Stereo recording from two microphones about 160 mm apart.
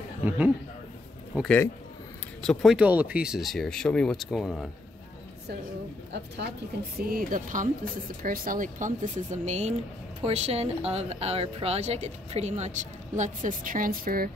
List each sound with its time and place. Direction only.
1.3 s a man's voice: 5° right (ahead or behind)
6.1 s a woman's voice: 90° right
7.0 s speech: 65° right (ahead or behind)